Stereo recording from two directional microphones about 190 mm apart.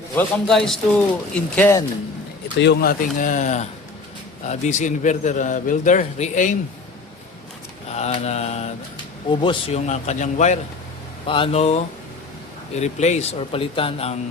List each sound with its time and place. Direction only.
0.2 s speech: 5° left (ahead or behind)
2.6 s speech: 65° left (ahead or behind)
3.2 s a man's voice: 40° left (ahead or behind)
7.9 s a man's voice: 35° left (ahead or behind)
11.3 s a man's voice: 30° left (ahead or behind)